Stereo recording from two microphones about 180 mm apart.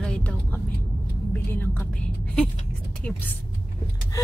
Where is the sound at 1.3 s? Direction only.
10° left (ahead or behind).